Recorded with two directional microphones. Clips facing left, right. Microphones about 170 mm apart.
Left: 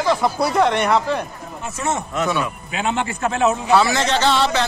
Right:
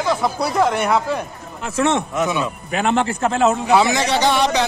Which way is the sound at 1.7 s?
90° right.